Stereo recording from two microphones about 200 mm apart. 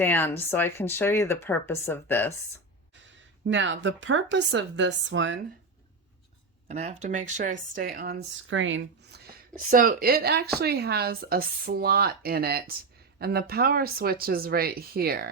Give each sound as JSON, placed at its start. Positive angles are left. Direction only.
{"t": 0.0, "sound": "speech", "side_deg": 10}
{"t": 3.4, "sound": "a woman's voice", "side_deg": -70}
{"t": 6.7, "sound": "speech", "side_deg": -35}
{"t": 8.4, "sound": "speech", "side_deg": -70}
{"t": 9.6, "sound": "speech", "side_deg": -45}